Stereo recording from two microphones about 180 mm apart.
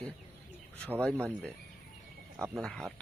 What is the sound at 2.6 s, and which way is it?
Speech, 5° left (ahead or behind).